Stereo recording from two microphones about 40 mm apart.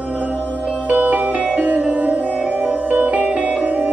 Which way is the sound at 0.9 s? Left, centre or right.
Right.